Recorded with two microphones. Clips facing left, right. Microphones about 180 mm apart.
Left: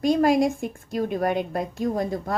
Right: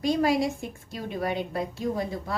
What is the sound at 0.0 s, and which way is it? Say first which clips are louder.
A woman's voice: left 4 dB; 50° left (ahead or behind).